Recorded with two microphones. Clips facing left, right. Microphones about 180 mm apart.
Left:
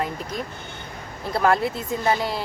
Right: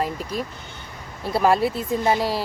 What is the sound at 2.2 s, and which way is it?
Speech, 35° right (ahead or behind).